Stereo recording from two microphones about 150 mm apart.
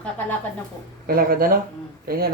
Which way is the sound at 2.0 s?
90° right.